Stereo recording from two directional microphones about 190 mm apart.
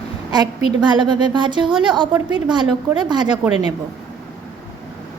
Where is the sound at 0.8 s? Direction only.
25° right (ahead or behind).